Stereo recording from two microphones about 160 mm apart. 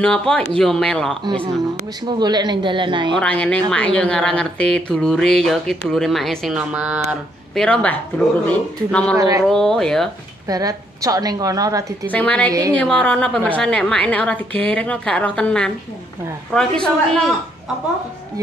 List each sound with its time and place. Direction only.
0.0 s speech: 5° left (ahead or behind)
1.2 s a woman's voice: 35° right (ahead or behind)
3.2 s a woman's voice: 5° left (ahead or behind)
7.6 s speech: 5° left (ahead or behind)
9.1 s a woman's voice: 20° right (ahead or behind)
9.5 s speech: 5° left (ahead or behind)
10.5 s a woman's voice: 20° right (ahead or behind)
12.1 s a woman's voice: 10° left (ahead or behind)